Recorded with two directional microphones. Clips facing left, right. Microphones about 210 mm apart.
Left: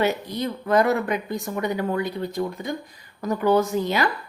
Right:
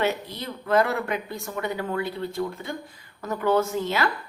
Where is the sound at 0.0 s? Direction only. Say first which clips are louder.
Left 3 dB; 15° left (ahead or behind).